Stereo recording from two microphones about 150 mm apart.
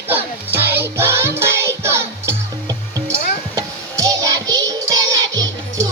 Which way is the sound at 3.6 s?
25° right (ahead or behind).